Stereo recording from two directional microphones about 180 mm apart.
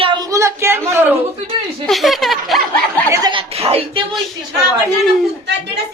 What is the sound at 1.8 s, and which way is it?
Laughter, centre (ahead or behind).